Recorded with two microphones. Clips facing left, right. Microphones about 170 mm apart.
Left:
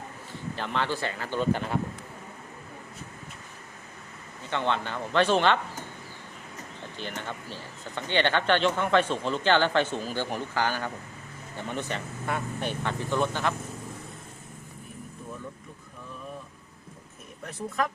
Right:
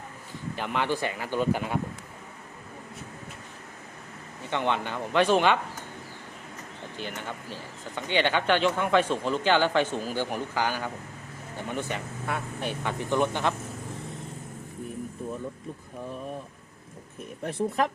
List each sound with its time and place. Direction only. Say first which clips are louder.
0.5 s speech: right 2 dB; 10° right (ahead or behind)
4.4 s speech: right 1 dB; 15° right (ahead or behind)
6.9 s speech: even; 10° right (ahead or behind)
12.8 s speech: right 2 dB; 15° right (ahead or behind)
17.4 s speech: right 4 dB; 30° right (ahead or behind)